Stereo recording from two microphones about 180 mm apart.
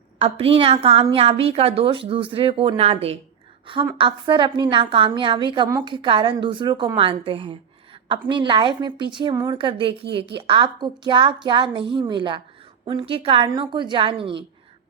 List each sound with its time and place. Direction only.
0.2 s a woman's voice: 30° right (ahead or behind)